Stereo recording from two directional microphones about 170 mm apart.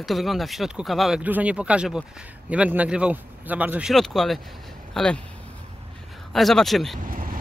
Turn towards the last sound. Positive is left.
turn(degrees=-55)  # may be behind; listen again after turning